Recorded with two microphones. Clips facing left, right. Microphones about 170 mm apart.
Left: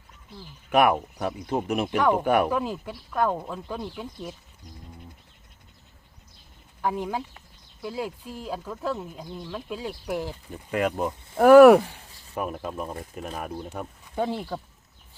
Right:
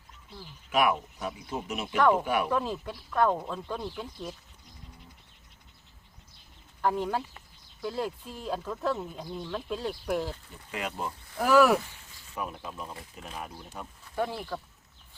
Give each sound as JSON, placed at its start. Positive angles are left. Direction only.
{"t": 0.7, "sound": "speech", "side_deg": 55}
{"t": 2.5, "sound": "speech", "side_deg": 5}
{"t": 6.8, "sound": "speech", "side_deg": 10}
{"t": 10.5, "sound": "speech", "side_deg": 50}
{"t": 14.2, "sound": "speech", "side_deg": 20}